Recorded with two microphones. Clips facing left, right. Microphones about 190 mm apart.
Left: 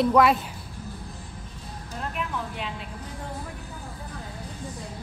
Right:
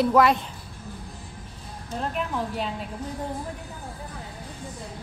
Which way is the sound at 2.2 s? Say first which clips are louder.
Right 2 dB; 35° right (ahead or behind).